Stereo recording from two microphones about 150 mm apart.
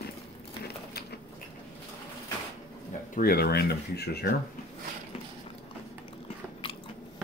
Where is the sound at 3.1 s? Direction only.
85° left.